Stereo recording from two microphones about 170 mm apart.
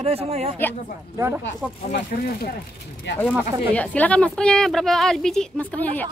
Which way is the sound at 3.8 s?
10° left (ahead or behind).